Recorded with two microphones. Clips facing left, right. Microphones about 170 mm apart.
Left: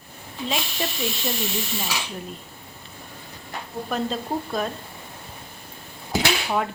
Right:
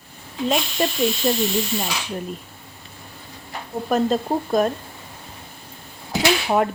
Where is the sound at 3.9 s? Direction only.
45° right (ahead or behind).